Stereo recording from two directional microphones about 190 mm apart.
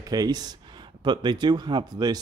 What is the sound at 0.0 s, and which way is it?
Speech, 20° right (ahead or behind).